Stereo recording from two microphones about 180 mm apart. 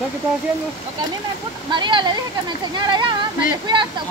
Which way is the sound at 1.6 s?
25° right (ahead or behind).